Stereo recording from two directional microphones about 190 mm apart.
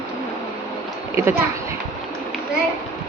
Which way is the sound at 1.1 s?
15° right (ahead or behind).